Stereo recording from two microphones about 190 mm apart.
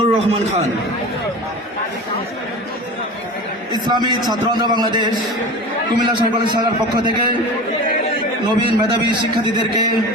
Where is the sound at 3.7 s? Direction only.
20° right (ahead or behind).